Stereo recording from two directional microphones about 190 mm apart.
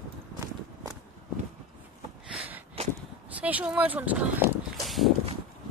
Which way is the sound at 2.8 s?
35° right (ahead or behind).